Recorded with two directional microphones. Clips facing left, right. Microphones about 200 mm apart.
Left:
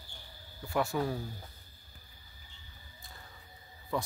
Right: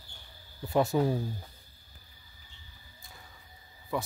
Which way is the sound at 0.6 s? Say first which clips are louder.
Right 5 dB; 20° right (ahead or behind).